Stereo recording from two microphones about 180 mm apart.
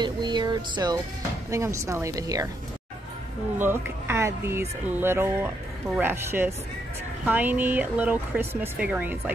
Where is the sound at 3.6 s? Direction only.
10° right (ahead or behind).